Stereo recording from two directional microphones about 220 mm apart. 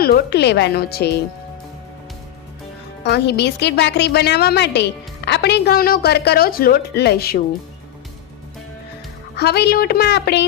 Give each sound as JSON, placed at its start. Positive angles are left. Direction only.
{"t": 0.0, "sound": "a woman's voice", "side_deg": 45}
{"t": 3.0, "sound": "a woman's voice", "side_deg": 50}
{"t": 9.3, "sound": "a woman's voice", "side_deg": 50}